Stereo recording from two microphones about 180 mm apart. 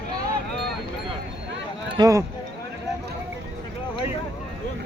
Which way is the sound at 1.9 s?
20° right (ahead or behind).